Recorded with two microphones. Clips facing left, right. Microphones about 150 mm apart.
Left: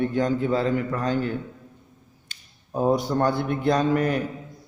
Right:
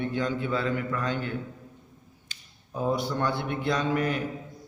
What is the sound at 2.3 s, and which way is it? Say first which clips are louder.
Speech: left 7 dB; 45° left (ahead or behind).